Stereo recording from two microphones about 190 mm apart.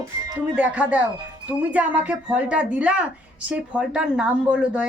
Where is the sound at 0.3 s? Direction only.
5° right (ahead or behind).